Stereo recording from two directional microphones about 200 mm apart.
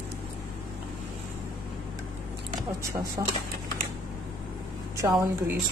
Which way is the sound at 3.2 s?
20° right (ahead or behind).